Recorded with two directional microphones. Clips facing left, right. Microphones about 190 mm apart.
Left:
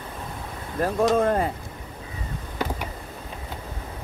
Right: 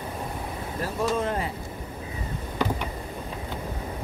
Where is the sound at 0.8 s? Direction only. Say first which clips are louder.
Left 6 dB; 60° left (ahead or behind).